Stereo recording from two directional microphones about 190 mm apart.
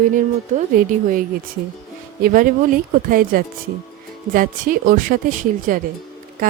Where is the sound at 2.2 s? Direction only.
45° right (ahead or behind).